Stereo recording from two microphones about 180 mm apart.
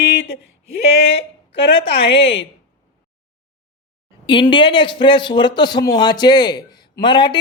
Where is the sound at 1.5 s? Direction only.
30° left (ahead or behind).